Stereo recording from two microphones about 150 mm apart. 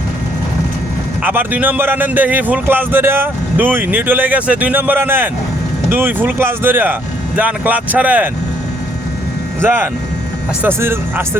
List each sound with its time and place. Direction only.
1.2 s speech: 10° right (ahead or behind)
9.6 s speech: 15° right (ahead or behind)